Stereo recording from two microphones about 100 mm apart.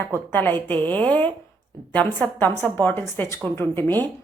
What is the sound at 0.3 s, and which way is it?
A woman's voice, 20° left (ahead or behind).